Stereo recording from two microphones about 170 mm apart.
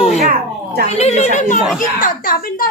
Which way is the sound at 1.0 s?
40° left (ahead or behind).